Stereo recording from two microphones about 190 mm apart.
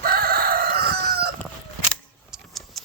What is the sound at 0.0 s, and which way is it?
Chicken, 50° right (ahead or behind).